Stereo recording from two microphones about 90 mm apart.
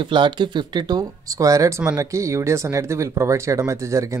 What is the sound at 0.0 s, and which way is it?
Speech, 65° right (ahead or behind).